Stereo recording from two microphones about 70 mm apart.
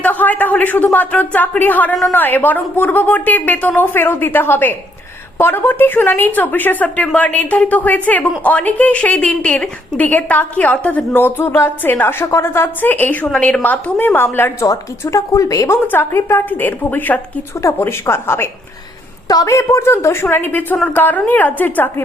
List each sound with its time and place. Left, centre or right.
0.0 s a woman's voice: left
12.2 s a woman's voice: left
15.0 s a woman's voice: left
17.6 s a woman's voice: left
19.3 s a woman's voice: left